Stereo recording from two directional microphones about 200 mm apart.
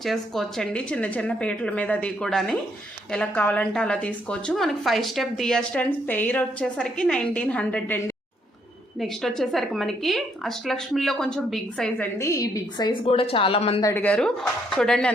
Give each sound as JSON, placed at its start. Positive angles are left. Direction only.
{"t": 0.0, "sound": "a woman's voice", "side_deg": 0}
{"t": 12.2, "sound": "a woman's voice", "side_deg": 15}
{"t": 13.8, "sound": "a woman's voice", "side_deg": 10}